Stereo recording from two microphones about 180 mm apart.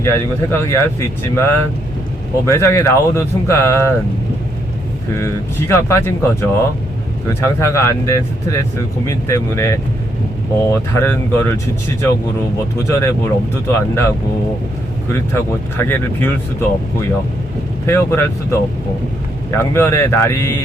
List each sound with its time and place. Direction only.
0.0 s speech: 15° left (ahead or behind)
5.1 s speech: 15° left (ahead or behind)
12.9 s speech: 15° left (ahead or behind)
15.3 s speech: 10° left (ahead or behind)
17.8 s speech: 15° left (ahead or behind)
19.7 s speech: 15° left (ahead or behind)